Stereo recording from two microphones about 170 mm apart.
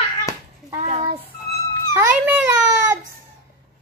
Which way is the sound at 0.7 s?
35° right (ahead or behind).